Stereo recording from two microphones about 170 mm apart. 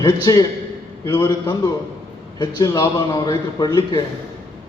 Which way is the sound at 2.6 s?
20° left (ahead or behind).